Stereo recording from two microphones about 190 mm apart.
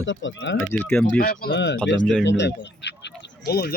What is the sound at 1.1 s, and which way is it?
Speech, 50° left (ahead or behind).